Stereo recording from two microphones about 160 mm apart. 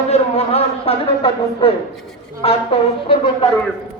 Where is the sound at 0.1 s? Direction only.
40° left (ahead or behind).